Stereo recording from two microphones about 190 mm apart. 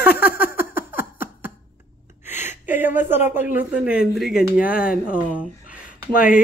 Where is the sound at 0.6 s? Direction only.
10° right (ahead or behind).